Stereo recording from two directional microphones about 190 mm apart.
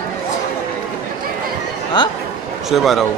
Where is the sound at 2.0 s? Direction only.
25° left (ahead or behind).